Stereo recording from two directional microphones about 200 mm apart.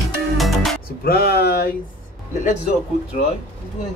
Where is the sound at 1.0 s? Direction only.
50° left (ahead or behind).